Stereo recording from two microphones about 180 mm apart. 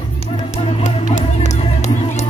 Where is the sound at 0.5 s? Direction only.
35° left (ahead or behind).